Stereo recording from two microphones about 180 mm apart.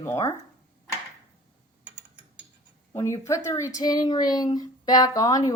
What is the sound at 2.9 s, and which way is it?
Speech, 15° left (ahead or behind).